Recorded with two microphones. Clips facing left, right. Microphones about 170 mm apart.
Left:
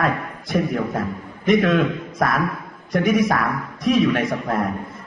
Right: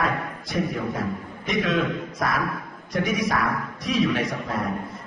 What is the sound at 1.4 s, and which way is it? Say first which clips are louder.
A man's voice: left 7 dB; 55° left (ahead or behind).